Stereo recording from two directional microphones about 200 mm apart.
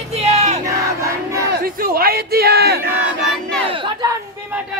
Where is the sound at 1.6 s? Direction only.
45° right (ahead or behind).